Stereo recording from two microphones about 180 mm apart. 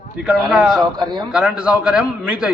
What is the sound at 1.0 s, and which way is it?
Speech, 25° right (ahead or behind).